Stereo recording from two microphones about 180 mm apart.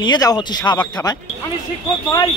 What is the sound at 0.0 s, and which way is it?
Speech, 20° left (ahead or behind).